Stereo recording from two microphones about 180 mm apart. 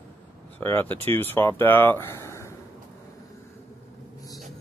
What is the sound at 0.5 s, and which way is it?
Speech, 10° left (ahead or behind).